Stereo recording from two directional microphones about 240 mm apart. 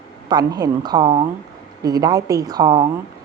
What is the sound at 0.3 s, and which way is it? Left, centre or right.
A woman's voice, centre.